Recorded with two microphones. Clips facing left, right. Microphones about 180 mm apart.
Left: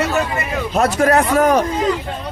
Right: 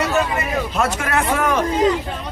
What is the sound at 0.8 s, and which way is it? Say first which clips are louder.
Speech: left 10 dB; 40° left (ahead or behind).